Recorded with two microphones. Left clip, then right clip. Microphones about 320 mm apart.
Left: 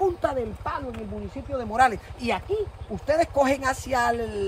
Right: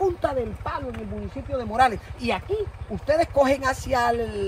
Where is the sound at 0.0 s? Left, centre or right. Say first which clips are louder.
Right 1 dB; centre.